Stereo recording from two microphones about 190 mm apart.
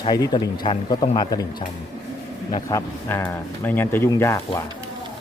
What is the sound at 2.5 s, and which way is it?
Speech, 20° left (ahead or behind).